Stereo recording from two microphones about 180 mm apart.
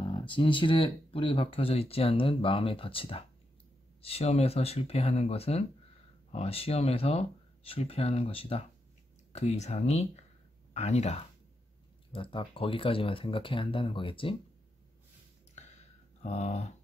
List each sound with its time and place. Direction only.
0.3 s speech: 25° left (ahead or behind)
16.2 s speech: 40° left (ahead or behind)